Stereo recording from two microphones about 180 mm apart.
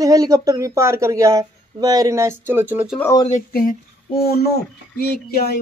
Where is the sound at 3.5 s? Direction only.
55° left (ahead or behind).